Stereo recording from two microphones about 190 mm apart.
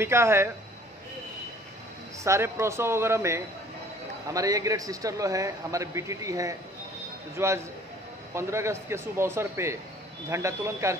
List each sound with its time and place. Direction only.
0.0 s a man's voice: 15° right (ahead or behind)
2.2 s a man's voice: 15° right (ahead or behind)